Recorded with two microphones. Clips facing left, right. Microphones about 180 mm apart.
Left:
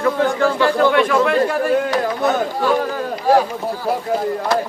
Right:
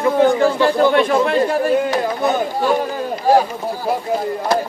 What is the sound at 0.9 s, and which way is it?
Speech, 30° right (ahead or behind).